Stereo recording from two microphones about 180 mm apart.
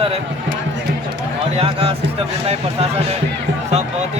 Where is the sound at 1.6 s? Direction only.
30° right (ahead or behind).